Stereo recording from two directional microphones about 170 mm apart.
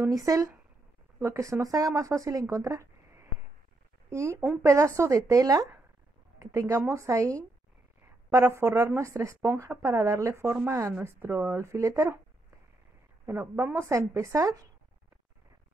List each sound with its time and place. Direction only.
0.0 s a woman's voice: 20° right (ahead or behind)
8.3 s speech: 15° right (ahead or behind)
13.2 s speech: 15° right (ahead or behind)